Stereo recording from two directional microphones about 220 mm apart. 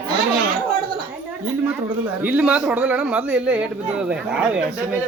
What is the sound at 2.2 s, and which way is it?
A man's voice, 5° right (ahead or behind).